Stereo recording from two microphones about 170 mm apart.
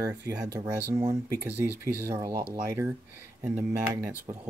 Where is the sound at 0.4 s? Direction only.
15° right (ahead or behind).